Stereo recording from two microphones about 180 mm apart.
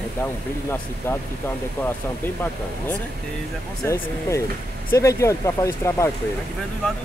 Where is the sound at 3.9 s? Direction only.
15° left (ahead or behind).